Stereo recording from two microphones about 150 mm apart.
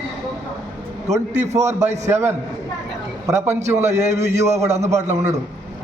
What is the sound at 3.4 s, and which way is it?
A man's voice, 50° right (ahead or behind).